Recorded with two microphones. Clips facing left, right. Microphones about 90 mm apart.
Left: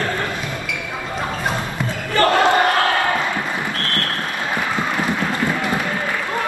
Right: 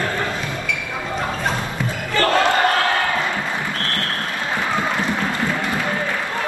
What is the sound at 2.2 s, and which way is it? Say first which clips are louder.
Crowd: left 2 dB; 20° left (ahead or behind).